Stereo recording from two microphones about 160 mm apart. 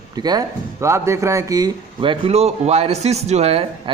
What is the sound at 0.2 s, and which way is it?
A man's voice, 25° right (ahead or behind).